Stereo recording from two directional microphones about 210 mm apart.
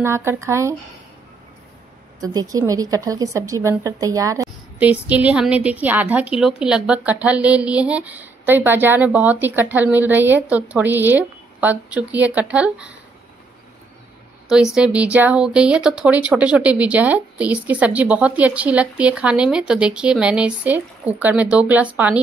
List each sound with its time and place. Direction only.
0.0 s speech: 10° right (ahead or behind)
2.1 s speech: 15° right (ahead or behind)
14.5 s speech: 5° right (ahead or behind)